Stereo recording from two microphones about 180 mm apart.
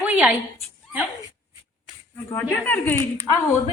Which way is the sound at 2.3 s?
10° left (ahead or behind).